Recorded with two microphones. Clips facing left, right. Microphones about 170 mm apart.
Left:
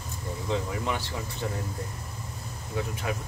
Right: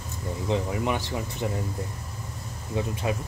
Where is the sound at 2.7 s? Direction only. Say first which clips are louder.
Right 3 dB; 20° right (ahead or behind).